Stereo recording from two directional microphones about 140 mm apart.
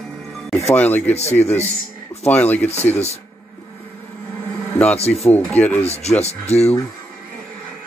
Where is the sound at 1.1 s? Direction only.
50° left (ahead or behind).